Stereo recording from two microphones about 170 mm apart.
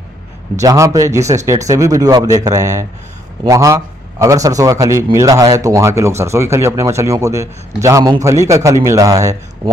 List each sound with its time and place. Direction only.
0.6 s a man's voice: 20° right (ahead or behind)